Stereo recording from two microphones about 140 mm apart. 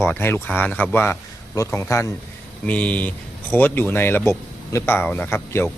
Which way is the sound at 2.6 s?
10° left (ahead or behind).